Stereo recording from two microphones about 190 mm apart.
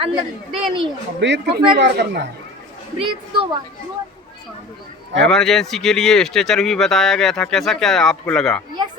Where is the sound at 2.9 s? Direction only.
25° right (ahead or behind).